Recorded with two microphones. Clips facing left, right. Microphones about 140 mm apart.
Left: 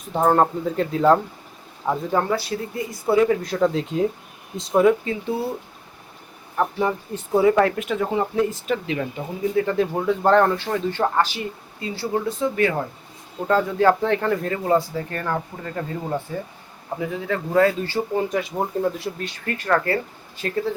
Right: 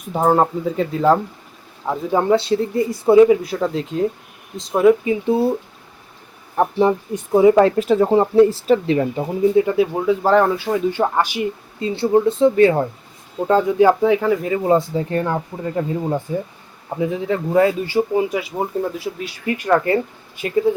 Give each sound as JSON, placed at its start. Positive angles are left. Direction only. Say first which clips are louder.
{"t": 0.1, "sound": "speech", "louder": "right 2 dB", "side_deg": -5}
{"t": 2.1, "sound": "speech", "louder": "right 10 dB", "side_deg": -20}
{"t": 3.4, "sound": "speech", "louder": "left 1 dB", "side_deg": -5}
{"t": 5.0, "sound": "speech", "louder": "right 8 dB", "side_deg": -20}
{"t": 6.6, "sound": "speech", "louder": "right 6 dB", "side_deg": -25}
{"t": 9.6, "sound": "speech", "louder": "right 5 dB", "side_deg": -10}
{"t": 11.8, "sound": "speech", "louder": "right 9 dB", "side_deg": -30}
{"t": 13.5, "sound": "speech", "louder": "right 4 dB", "side_deg": -15}
{"t": 14.7, "sound": "speech", "louder": "right 3 dB", "side_deg": -20}